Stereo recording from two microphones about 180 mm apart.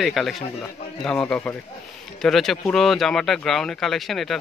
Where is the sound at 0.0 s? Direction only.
Centre (ahead or behind).